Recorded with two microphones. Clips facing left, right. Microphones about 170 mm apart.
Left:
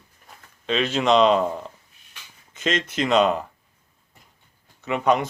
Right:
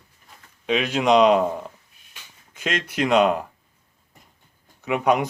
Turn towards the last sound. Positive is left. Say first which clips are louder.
# right 1 dB
turn(degrees=-10)  # may be behind; listen again after turning